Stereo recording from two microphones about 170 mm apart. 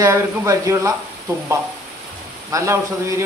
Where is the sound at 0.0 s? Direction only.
15° right (ahead or behind).